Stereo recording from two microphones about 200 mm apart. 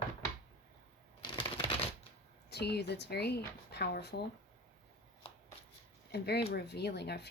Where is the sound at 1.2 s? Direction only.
25° left (ahead or behind).